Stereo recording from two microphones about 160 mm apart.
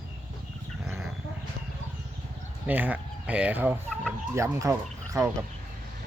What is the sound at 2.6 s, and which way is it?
Speech, 10° right (ahead or behind).